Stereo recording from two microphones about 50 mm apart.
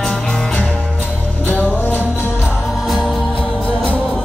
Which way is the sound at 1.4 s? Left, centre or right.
Left.